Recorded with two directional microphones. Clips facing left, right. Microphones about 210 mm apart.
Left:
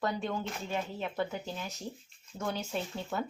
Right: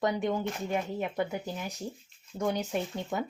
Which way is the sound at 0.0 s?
15° right (ahead or behind).